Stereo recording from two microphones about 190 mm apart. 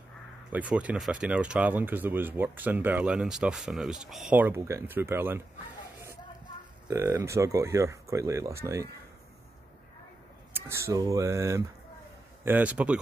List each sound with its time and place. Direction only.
0.5 s speech: 5° right (ahead or behind)
6.9 s speech: 10° right (ahead or behind)
10.5 s speech: 15° right (ahead or behind)